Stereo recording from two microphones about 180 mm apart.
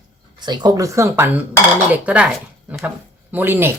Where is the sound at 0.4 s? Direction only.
25° right (ahead or behind); by 2.3 s 10° right (ahead or behind).